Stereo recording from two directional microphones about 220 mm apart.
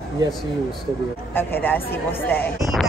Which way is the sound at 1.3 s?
10° left (ahead or behind).